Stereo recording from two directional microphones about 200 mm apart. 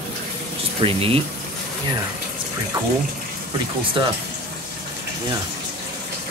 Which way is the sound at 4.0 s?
25° right (ahead or behind).